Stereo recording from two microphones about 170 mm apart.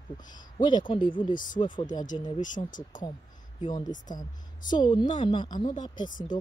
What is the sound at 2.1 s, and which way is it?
Speech, 35° left (ahead or behind).